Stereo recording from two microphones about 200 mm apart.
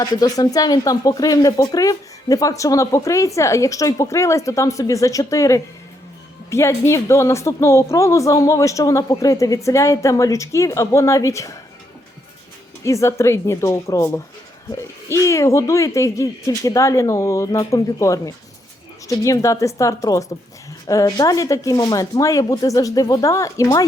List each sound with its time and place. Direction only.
0.0 s speech: 20° left (ahead or behind)
12.8 s speech: 15° left (ahead or behind)